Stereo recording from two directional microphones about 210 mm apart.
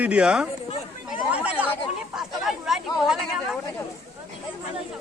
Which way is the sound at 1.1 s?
5° right (ahead or behind).